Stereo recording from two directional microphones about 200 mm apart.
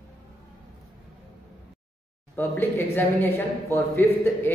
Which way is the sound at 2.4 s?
10° left (ahead or behind).